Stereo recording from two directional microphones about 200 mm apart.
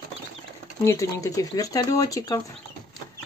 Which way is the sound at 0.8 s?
15° left (ahead or behind).